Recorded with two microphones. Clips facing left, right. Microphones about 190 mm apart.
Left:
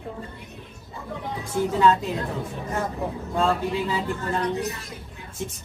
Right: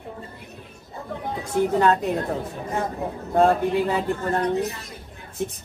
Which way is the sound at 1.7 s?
60° right (ahead or behind).